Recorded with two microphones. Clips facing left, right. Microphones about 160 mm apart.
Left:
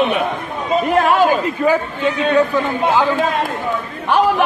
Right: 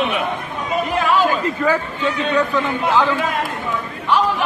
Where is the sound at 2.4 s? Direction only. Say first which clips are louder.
Left 3 dB; 30° left (ahead or behind).